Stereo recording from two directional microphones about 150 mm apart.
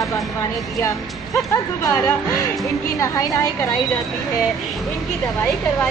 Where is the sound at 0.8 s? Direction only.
20° left (ahead or behind).